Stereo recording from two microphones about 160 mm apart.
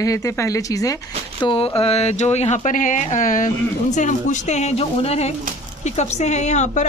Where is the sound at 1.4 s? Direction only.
35° left (ahead or behind).